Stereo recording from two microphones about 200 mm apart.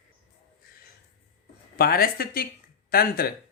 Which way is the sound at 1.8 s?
50° left (ahead or behind).